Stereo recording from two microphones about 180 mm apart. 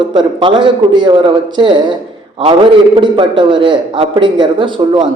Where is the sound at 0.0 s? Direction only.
25° right (ahead or behind).